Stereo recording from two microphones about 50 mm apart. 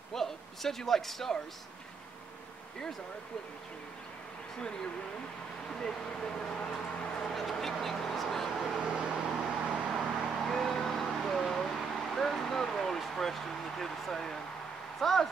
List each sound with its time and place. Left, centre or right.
0.1 s a sound: centre
5.7 s speech: centre
7.3 s vehicle: centre
8.8 s vehicle: centre
9.9 s vehicle: centre
12.1 s speech: centre